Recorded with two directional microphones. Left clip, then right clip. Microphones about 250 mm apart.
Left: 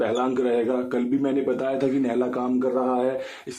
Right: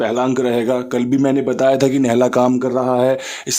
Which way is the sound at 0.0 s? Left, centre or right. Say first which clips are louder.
Right 6 dB; right.